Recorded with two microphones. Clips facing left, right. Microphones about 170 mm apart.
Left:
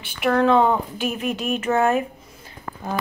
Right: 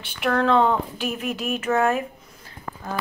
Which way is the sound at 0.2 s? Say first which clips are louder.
Left 2 dB; 5° left (ahead or behind).